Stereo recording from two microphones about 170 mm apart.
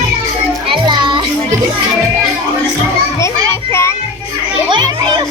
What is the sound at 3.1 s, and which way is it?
Children playing, 15° left (ahead or behind).